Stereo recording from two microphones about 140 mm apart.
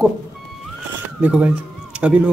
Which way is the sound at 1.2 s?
10° right (ahead or behind).